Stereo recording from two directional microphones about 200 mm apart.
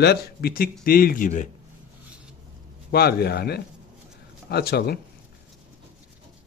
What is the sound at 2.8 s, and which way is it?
A man's voice, 50° left (ahead or behind).